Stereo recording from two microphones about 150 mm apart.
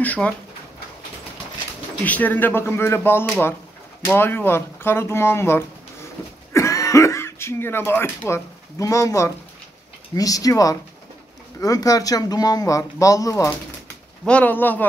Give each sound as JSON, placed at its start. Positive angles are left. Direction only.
{"t": 0.0, "sound": "speech", "side_deg": 10}
{"t": 2.0, "sound": "speech", "side_deg": 10}
{"t": 14.2, "sound": "speech", "side_deg": 10}